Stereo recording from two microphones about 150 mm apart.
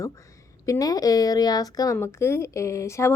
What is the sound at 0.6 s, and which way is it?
Speech, 25° left (ahead or behind).